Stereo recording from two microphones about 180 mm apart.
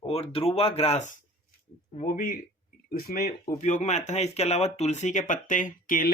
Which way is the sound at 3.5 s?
40° left (ahead or behind).